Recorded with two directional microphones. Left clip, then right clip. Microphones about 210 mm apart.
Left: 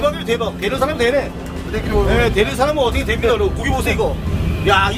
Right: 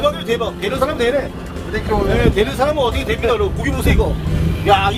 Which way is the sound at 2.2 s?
10° left (ahead or behind).